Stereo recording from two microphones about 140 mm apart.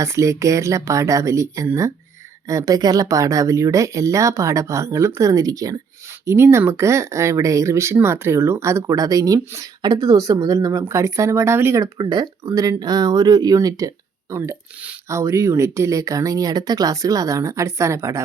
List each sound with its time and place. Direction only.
0.0 s speech: 20° right (ahead or behind)